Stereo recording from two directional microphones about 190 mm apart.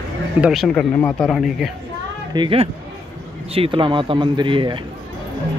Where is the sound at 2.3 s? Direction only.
25° right (ahead or behind).